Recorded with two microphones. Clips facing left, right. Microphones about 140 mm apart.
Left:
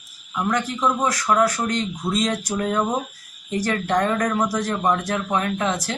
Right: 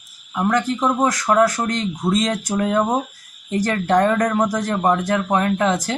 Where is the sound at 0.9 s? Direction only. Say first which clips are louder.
Right 5 dB; 45° right (ahead or behind).